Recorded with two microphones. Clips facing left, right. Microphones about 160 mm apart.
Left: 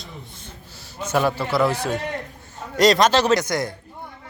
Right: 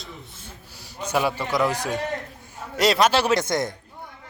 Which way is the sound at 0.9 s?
10° right (ahead or behind).